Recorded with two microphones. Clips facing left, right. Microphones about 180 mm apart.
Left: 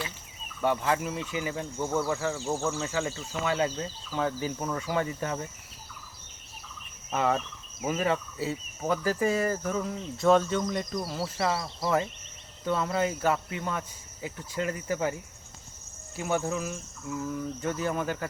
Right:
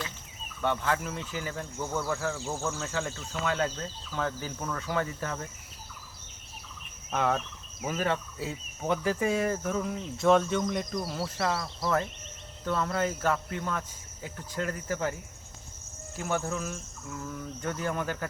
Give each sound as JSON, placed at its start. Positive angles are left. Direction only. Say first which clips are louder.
{"t": 0.6, "sound": "speech", "louder": "left 2 dB", "side_deg": 10}
{"t": 7.1, "sound": "speech", "louder": "left 1 dB", "side_deg": 0}
{"t": 16.1, "sound": "speech", "louder": "left 2 dB", "side_deg": 0}